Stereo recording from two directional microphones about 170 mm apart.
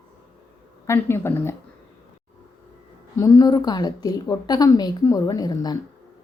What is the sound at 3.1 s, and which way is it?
Speech, 20° left (ahead or behind).